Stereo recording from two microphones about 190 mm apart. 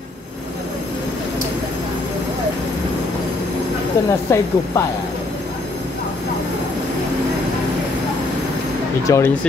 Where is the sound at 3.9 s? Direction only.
15° left (ahead or behind).